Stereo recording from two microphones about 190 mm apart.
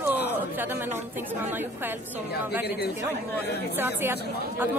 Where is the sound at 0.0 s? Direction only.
10° right (ahead or behind).